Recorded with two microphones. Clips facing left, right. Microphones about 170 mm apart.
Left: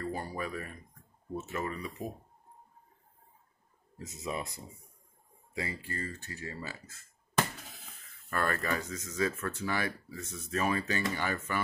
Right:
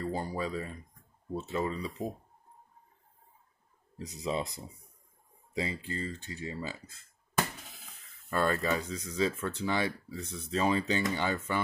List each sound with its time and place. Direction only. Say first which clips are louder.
0.0 s speech: right 3 dB; 15° right (ahead or behind)
4.0 s speech: right 4 dB; 15° right (ahead or behind)
8.3 s speech: right 3 dB; 15° right (ahead or behind)